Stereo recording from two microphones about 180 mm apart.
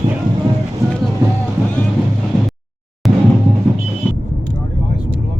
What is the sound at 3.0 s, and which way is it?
Music, centre (ahead or behind).